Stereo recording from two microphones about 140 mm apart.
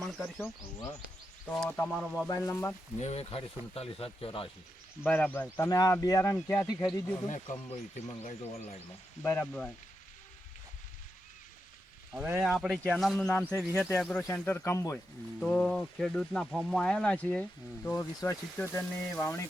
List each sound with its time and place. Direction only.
0.0 s speech: 5° left (ahead or behind)
1.5 s speech: 15° left (ahead or behind)
1.9 s speech: centre (ahead or behind)
2.2 s speech: 20° left (ahead or behind)
3.0 s speech: 50° left (ahead or behind)
5.0 s a man's voice: 10° left (ahead or behind)
7.3 s speech: 65° left (ahead or behind)
9.2 s speech: 15° left (ahead or behind)
12.1 s speech: 15° right (ahead or behind)
12.4 s speech: 5° right (ahead or behind)
13.1 s speech: 15° left (ahead or behind)
14.0 s a man's voice: 5° left (ahead or behind)
14.9 s speech: 10° left (ahead or behind)
17.9 s a man's voice: 25° left (ahead or behind)